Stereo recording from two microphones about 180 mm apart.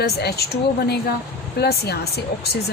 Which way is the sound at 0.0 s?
65° left (ahead or behind).